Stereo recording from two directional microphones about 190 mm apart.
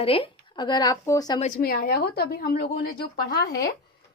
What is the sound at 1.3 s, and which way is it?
A woman's voice, 40° left (ahead or behind).